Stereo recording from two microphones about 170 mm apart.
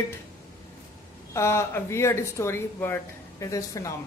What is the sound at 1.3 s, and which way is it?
Speech, 15° left (ahead or behind).